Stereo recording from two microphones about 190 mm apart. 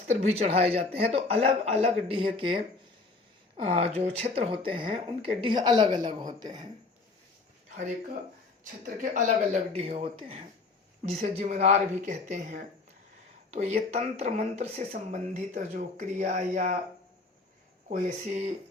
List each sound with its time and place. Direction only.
0.2 s a man's voice: 35° right (ahead or behind)
3.6 s speech: 30° right (ahead or behind)
8.6 s a man's voice: 45° right (ahead or behind)
17.8 s a man's voice: 40° right (ahead or behind)